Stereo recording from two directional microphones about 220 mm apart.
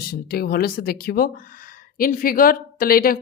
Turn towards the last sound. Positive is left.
turn(degrees=40)  # may be behind; listen again after turning